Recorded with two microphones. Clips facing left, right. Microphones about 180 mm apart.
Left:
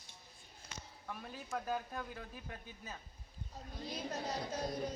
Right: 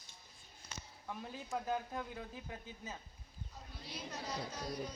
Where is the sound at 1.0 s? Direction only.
15° right (ahead or behind).